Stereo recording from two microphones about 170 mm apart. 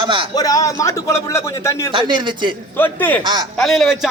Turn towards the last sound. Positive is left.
turn(degrees=0)  # may be behind; listen again after turning